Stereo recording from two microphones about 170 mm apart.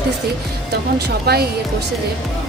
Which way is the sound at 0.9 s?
70° right (ahead or behind).